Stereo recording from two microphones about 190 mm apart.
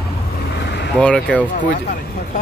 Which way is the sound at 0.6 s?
60° left (ahead or behind).